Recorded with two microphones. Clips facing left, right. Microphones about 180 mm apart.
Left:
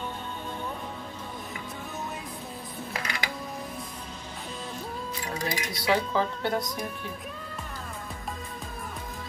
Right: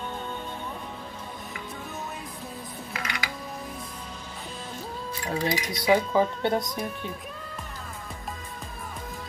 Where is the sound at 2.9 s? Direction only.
35° left (ahead or behind).